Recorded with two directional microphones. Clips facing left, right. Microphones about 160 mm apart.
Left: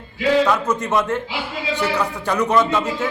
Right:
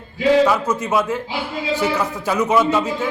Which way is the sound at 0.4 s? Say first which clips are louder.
Right 1 dB; centre (ahead or behind).